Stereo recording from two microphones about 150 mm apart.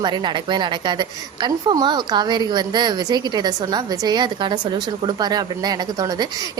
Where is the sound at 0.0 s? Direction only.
30° right (ahead or behind).